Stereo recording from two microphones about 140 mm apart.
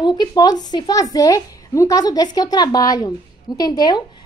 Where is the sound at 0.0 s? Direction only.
30° left (ahead or behind).